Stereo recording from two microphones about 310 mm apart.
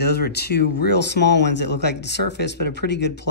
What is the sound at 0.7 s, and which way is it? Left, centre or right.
Speech, left.